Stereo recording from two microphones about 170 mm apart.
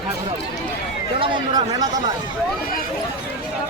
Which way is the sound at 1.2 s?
25° right (ahead or behind).